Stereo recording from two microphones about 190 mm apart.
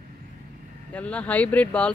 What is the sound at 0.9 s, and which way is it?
Speech, 5° left (ahead or behind).